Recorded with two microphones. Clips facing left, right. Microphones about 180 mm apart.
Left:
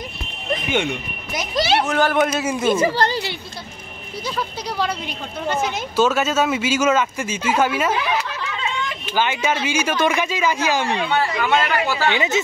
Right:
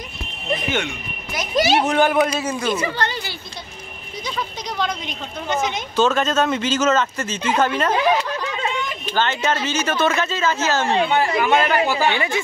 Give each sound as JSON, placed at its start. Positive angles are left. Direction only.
{"t": 1.5, "sound": "speech", "side_deg": -20}
{"t": 2.1, "sound": "a man's voice", "side_deg": 5}
{"t": 2.9, "sound": "speech", "side_deg": 35}
{"t": 4.4, "sound": "speech", "side_deg": 10}
{"t": 8.0, "sound": "snicker", "side_deg": -40}
{"t": 9.1, "sound": "speech", "side_deg": 10}
{"t": 11.0, "sound": "speech", "side_deg": -20}
{"t": 12.1, "sound": "speech", "side_deg": 20}